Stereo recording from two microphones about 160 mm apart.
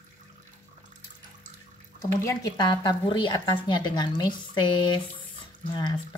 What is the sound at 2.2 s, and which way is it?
A woman's voice, 20° left (ahead or behind).